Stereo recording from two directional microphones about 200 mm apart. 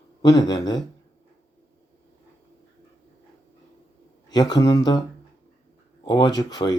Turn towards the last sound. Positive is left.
turn(degrees=20)  # may be behind; listen again after turning